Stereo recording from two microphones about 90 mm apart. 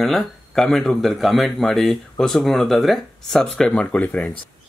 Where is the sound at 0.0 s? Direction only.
Centre (ahead or behind).